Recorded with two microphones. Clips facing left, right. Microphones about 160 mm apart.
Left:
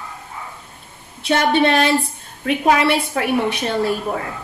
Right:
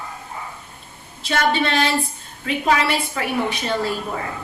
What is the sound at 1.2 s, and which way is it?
A woman's voice, 60° left (ahead or behind).